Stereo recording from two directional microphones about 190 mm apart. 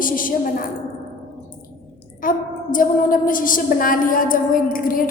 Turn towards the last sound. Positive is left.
turn(degrees=45)  # may be behind; listen again after turning